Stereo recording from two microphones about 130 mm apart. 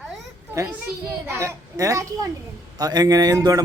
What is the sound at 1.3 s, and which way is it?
A man's voice, 20° right (ahead or behind).